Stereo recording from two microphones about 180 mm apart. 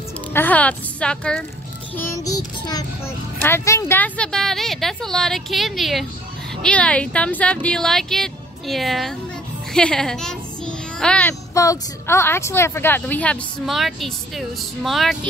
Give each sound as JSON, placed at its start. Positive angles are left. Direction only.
{"t": 0.3, "sound": "a woman's voice", "side_deg": 10}
{"t": 2.0, "sound": "child singing", "side_deg": 15}
{"t": 3.4, "sound": "a woman's voice", "side_deg": 15}
{"t": 9.7, "sound": "a sound", "side_deg": 5}
{"t": 11.5, "sound": "a woman's voice", "side_deg": 20}